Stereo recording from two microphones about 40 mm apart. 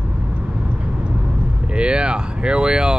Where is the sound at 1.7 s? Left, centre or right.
Right.